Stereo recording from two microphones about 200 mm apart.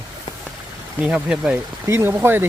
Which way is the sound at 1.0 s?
5° right (ahead or behind).